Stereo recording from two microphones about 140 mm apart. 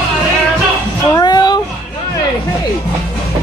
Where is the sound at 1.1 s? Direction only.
30° left (ahead or behind).